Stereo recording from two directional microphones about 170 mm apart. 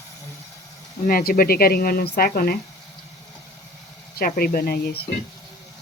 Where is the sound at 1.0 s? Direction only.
55° left (ahead or behind).